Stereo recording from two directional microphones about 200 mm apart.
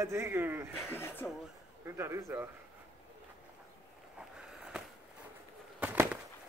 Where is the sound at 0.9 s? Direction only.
10° left (ahead or behind).